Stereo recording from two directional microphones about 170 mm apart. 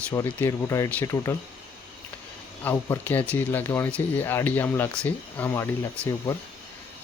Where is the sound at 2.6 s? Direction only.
10° left (ahead or behind).